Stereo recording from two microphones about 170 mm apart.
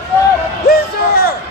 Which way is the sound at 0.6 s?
60° left (ahead or behind).